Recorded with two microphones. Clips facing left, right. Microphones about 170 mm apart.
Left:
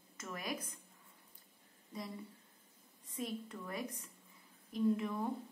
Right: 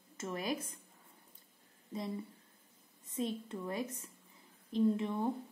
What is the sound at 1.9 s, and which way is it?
Speech, 25° right (ahead or behind).